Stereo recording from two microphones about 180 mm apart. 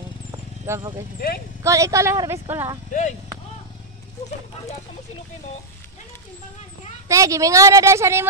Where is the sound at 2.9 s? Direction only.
45° left (ahead or behind).